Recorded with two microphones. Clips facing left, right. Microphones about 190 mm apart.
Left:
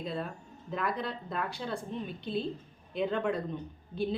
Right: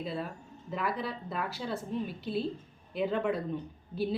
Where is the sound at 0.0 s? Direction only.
5° right (ahead or behind).